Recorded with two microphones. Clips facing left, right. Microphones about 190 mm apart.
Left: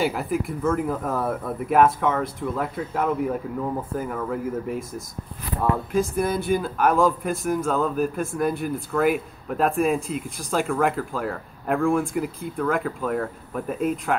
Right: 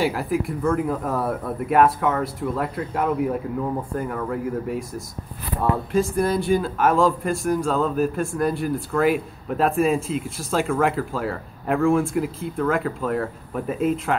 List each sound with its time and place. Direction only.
0.0 s speech: centre (ahead or behind)